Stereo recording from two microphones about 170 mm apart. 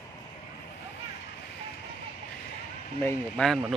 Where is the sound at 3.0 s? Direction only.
5° left (ahead or behind).